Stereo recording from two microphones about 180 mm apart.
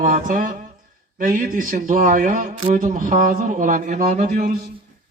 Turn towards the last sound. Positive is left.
turn(degrees=-45)  # may be behind; listen again after turning